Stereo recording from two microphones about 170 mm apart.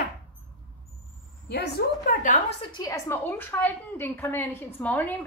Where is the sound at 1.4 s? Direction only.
75° left (ahead or behind).